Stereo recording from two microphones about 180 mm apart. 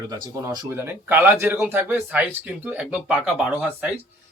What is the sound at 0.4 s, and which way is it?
Speech, 20° right (ahead or behind).